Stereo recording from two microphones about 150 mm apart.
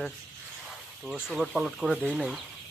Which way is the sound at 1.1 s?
5° right (ahead or behind).